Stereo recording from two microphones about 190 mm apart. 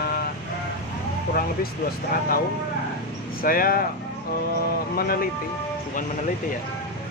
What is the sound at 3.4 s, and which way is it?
Speech, 50° left (ahead or behind).